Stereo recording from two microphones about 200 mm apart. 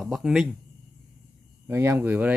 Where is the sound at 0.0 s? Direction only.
Centre (ahead or behind).